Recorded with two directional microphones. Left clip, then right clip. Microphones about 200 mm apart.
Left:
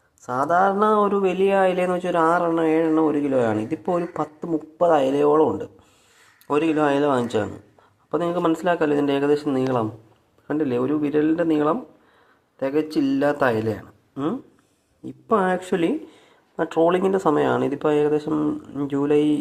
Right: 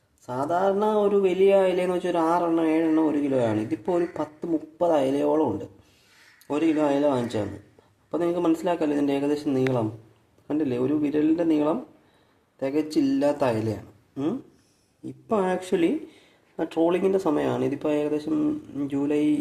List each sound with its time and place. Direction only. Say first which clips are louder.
0.3 s speech: left 5 dB; 10° left (ahead or behind)